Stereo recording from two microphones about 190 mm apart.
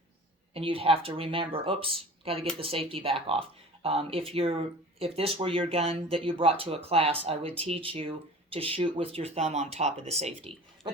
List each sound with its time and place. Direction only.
0.5 s speech: 30° right (ahead or behind)